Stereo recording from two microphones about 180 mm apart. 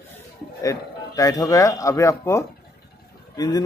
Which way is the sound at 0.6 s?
20° left (ahead or behind).